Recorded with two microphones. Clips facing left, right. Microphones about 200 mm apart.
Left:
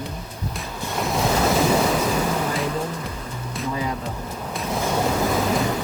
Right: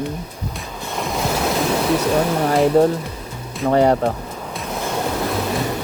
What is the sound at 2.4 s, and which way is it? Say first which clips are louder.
Speech: right 11 dB; 75° right (ahead or behind).